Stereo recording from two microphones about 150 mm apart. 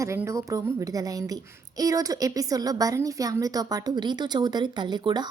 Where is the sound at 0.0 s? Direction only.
20° right (ahead or behind).